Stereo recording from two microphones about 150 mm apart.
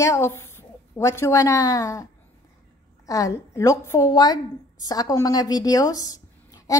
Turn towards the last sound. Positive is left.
turn(degrees=25)  # may be behind; listen again after turning